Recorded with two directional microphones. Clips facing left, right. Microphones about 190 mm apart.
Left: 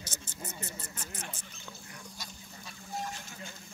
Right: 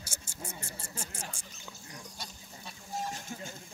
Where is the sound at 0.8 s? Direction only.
30° right (ahead or behind).